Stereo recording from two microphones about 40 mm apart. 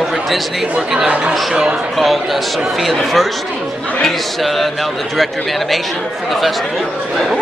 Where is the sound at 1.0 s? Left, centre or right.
Right.